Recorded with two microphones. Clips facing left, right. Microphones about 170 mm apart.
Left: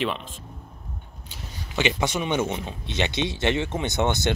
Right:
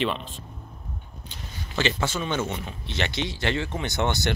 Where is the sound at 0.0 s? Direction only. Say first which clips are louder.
Even; centre (ahead or behind).